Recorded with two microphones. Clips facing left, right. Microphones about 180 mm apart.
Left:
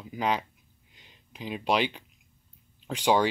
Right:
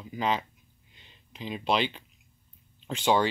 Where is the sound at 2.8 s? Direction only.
10° left (ahead or behind).